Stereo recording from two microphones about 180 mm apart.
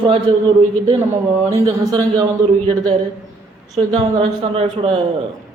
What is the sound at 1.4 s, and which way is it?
Speech, 20° right (ahead or behind).